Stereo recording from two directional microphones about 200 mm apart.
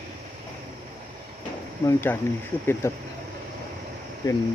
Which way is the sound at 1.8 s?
10° left (ahead or behind).